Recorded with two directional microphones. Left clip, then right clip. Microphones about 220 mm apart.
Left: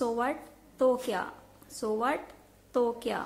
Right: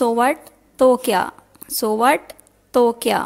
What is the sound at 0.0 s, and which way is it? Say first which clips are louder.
A woman's voice: right 13 dB; 45° right (ahead or behind).